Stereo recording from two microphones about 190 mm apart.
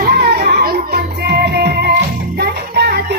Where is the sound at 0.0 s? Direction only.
55° right (ahead or behind).